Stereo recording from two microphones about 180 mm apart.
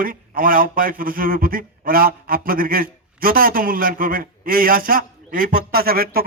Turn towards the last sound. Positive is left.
turn(degrees=-55)  # may be behind; listen again after turning